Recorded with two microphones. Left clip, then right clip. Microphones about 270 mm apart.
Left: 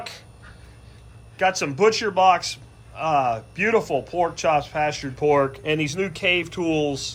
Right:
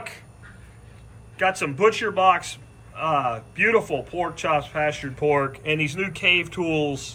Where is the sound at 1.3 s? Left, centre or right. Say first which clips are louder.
Left 2 dB; centre.